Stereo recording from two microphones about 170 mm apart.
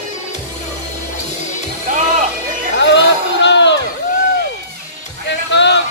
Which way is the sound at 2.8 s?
90° left.